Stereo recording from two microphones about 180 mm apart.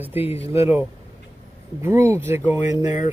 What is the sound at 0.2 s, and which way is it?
Speech, 35° left (ahead or behind).